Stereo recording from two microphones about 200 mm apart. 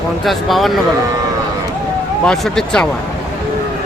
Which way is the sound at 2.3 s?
5° left (ahead or behind).